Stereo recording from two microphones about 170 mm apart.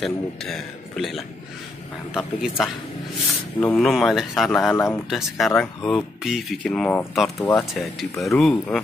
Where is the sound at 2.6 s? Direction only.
Centre (ahead or behind).